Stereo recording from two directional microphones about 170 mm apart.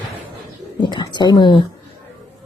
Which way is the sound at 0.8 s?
25° left (ahead or behind).